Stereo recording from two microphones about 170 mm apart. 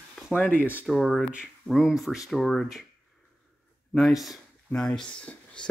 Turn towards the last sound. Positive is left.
turn(degrees=5)  # may be behind; listen again after turning